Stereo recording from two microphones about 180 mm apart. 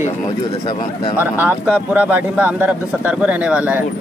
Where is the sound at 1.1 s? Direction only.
10° right (ahead or behind).